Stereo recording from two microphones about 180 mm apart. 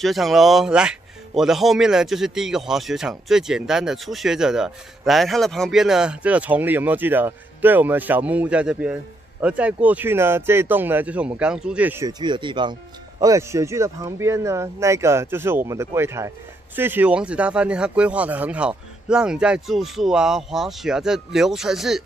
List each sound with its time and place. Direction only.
0.0 s speech: centre (ahead or behind)